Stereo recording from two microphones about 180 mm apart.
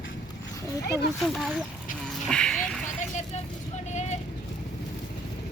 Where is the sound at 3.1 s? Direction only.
40° left (ahead or behind).